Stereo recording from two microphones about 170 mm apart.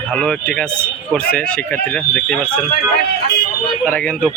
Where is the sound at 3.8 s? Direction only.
10° left (ahead or behind).